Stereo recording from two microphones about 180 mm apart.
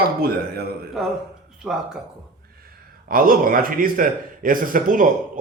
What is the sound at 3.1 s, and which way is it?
A man's voice, 50° right (ahead or behind).